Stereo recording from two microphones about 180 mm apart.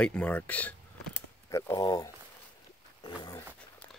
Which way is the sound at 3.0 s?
25° left (ahead or behind).